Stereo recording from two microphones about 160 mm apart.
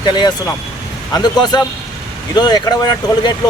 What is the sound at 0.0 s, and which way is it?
Speech, 30° left (ahead or behind).